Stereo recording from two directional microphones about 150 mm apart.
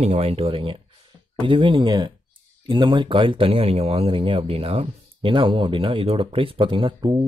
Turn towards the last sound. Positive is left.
turn(degrees=-35)  # may be behind; listen again after turning